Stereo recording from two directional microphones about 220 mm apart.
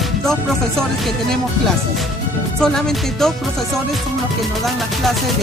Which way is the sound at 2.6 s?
Centre (ahead or behind).